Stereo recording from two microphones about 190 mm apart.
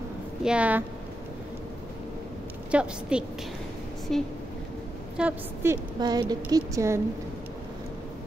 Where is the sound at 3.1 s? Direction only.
5° right (ahead or behind).